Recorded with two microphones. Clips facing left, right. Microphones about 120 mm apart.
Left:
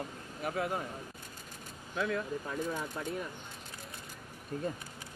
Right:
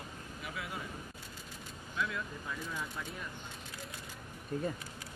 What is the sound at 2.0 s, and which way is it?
Speech, 40° left (ahead or behind).